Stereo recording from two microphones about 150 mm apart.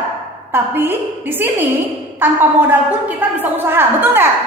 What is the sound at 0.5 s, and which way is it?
Speech, 15° right (ahead or behind).